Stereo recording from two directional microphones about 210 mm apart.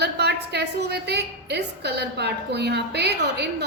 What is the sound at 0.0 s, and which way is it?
A woman's voice, 55° right (ahead or behind).